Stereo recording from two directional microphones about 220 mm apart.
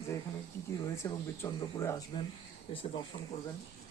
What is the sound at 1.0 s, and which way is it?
Speech, 15° left (ahead or behind).